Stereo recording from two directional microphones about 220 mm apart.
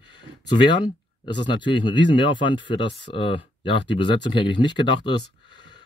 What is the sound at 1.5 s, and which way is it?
Speech, 20° left (ahead or behind).